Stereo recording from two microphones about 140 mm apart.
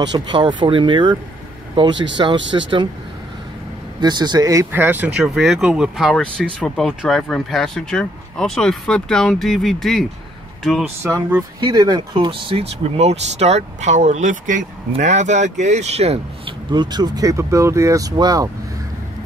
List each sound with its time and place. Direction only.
0.3 s speech: 35° right (ahead or behind)
4.0 s speech: 30° right (ahead or behind)
4.8 s speech: 10° right (ahead or behind)
5.3 s speech: centre (ahead or behind)
11.0 s speech: 20° right (ahead or behind); by 16.5 s 50° right (ahead or behind)
16.7 s speech: 30° right (ahead or behind)